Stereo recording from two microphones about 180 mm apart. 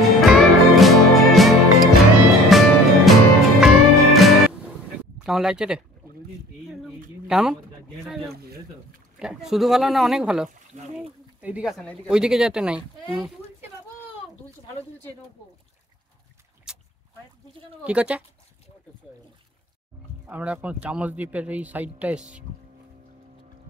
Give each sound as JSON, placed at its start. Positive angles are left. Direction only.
{"t": 0.0, "sound": "music", "side_deg": 0}
{"t": 5.2, "sound": "speech", "side_deg": -5}
{"t": 7.2, "sound": "speech", "side_deg": -5}
{"t": 8.3, "sound": "a sound", "side_deg": -60}
{"t": 9.2, "sound": "speech", "side_deg": -5}
{"t": 10.5, "sound": "a sound", "side_deg": -40}
{"t": 11.4, "sound": "speech", "side_deg": -5}
{"t": 16.7, "sound": "boat", "side_deg": -5}
{"t": 17.8, "sound": "a man's voice", "side_deg": -5}
{"t": 20.2, "sound": "a man's voice", "side_deg": -10}